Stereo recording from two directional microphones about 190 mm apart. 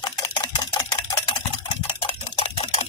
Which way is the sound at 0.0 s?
20° left (ahead or behind).